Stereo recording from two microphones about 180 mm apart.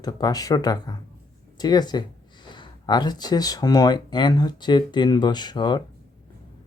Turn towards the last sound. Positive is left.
turn(degrees=25)  # may be behind; listen again after turning